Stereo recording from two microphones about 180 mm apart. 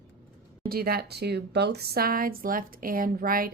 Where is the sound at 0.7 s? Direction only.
60° right (ahead or behind).